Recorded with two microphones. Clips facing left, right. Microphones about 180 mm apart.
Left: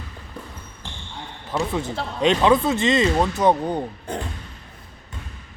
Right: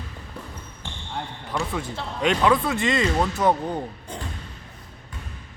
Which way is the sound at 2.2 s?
25° left (ahead or behind).